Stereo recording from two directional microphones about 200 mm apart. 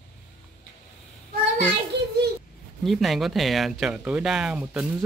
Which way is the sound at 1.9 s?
55° right (ahead or behind).